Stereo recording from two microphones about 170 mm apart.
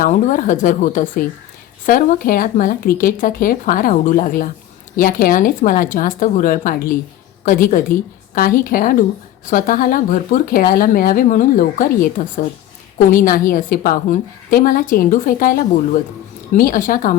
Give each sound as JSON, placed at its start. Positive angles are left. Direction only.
{"t": 0.0, "sound": "speech", "side_deg": 50}